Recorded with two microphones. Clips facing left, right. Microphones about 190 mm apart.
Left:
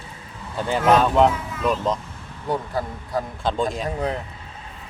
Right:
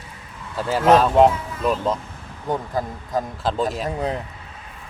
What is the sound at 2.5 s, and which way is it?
Speech, 20° right (ahead or behind).